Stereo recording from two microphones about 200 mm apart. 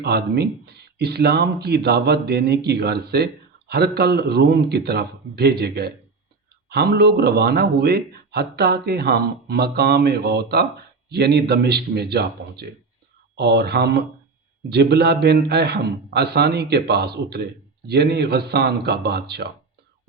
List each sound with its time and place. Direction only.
0.0 s a man's voice: 55° right (ahead or behind)